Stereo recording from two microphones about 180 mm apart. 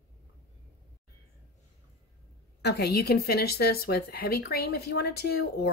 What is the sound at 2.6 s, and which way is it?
Speech, 60° left (ahead or behind).